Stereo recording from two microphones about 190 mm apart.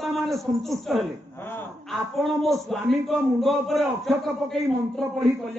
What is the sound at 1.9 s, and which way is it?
A man's voice, centre (ahead or behind).